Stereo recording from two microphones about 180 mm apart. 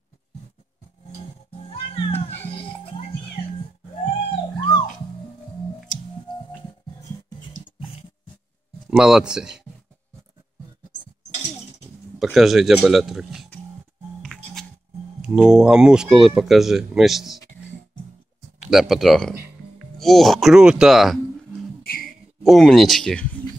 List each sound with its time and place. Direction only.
1.7 s music: 30° left (ahead or behind)
8.9 s speech: 5° right (ahead or behind)
12.2 s speech: centre (ahead or behind)
14.2 s music: centre (ahead or behind)
15.2 s speech: 5° right (ahead or behind)
18.7 s speech: centre (ahead or behind)
21.8 s a sound: 55° left (ahead or behind)
22.4 s speech: centre (ahead or behind)